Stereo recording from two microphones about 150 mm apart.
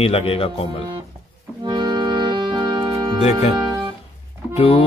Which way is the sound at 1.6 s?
30° right (ahead or behind).